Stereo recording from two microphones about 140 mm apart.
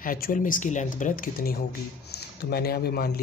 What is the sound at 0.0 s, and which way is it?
Speech, 80° left.